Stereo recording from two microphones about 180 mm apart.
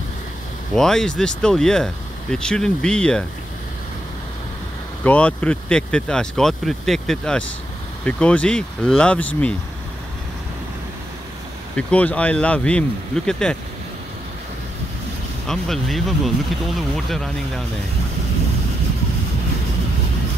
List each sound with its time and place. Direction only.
0.7 s speech: 5° left (ahead or behind)
5.0 s speech: 5° left (ahead or behind)
11.7 s speech: 5° left (ahead or behind)
15.4 s speech: centre (ahead or behind)